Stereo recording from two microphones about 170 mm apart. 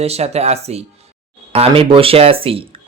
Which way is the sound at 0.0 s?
40° right (ahead or behind).